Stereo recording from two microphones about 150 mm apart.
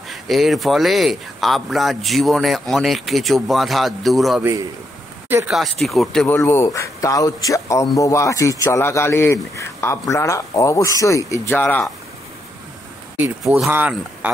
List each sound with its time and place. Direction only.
0.1 s speech: centre (ahead or behind)
4.4 s a man's voice: 20° right (ahead or behind)
5.5 s speech: centre (ahead or behind)
6.2 s a man's voice: 15° left (ahead or behind)
13.4 s speech: centre (ahead or behind)